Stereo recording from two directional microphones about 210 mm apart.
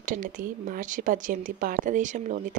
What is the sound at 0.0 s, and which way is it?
Speech, 40° right (ahead or behind).